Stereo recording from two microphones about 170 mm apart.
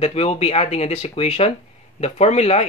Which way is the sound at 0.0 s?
35° left (ahead or behind).